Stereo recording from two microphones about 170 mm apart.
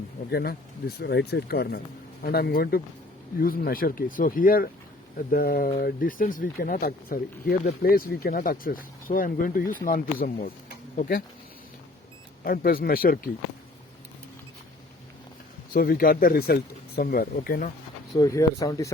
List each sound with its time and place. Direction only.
0.3 s speech: 65° left (ahead or behind)
12.5 s speech: 60° left (ahead or behind)
15.7 s speech: 60° left (ahead or behind)
18.2 s speech: 20° left (ahead or behind)